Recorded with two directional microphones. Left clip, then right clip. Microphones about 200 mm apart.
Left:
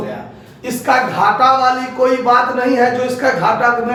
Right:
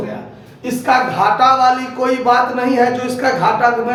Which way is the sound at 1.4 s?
25° right (ahead or behind).